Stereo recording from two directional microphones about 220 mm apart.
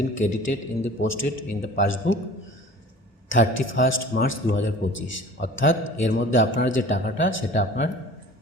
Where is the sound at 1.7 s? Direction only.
60° left (ahead or behind).